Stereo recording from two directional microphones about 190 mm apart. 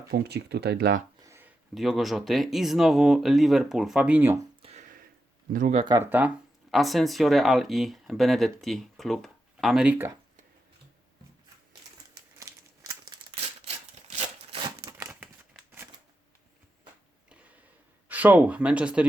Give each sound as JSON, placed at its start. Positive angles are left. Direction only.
{"t": 0.1, "sound": "speech", "side_deg": -60}
{"t": 1.2, "sound": "speech", "side_deg": -10}
{"t": 4.6, "sound": "a sound", "side_deg": -35}
{"t": 5.7, "sound": "speech", "side_deg": -25}
{"t": 6.0, "sound": "speech", "side_deg": -10}
{"t": 12.1, "sound": "crumpling", "side_deg": -15}
{"t": 14.5, "sound": "a sound", "side_deg": -20}
{"t": 14.9, "sound": "scissors", "side_deg": -10}
{"t": 17.2, "sound": "a sound", "side_deg": -5}
{"t": 18.1, "sound": "speech", "side_deg": -10}